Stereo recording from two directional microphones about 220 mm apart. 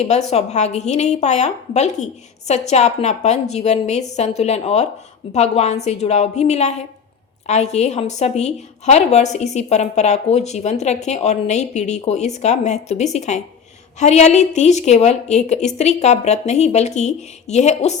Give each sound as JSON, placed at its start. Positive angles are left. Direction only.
{"t": 0.0, "sound": "a woman's voice", "side_deg": 30}